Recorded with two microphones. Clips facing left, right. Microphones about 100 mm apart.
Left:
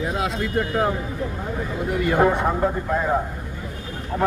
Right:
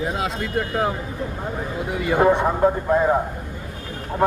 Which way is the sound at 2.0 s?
10° right (ahead or behind).